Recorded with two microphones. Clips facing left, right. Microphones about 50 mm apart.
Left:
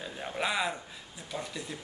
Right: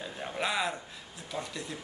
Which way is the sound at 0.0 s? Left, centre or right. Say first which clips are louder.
Even; centre.